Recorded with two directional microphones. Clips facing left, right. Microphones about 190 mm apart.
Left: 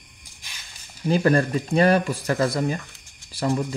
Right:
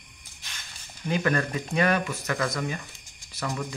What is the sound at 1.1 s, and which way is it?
Speech, 35° left (ahead or behind).